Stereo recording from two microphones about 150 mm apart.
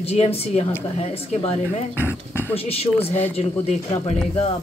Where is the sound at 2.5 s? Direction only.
40° left (ahead or behind).